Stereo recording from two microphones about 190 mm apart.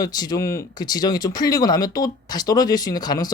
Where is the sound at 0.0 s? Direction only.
20° left (ahead or behind).